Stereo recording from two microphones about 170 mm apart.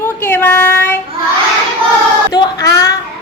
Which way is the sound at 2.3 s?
20° left (ahead or behind).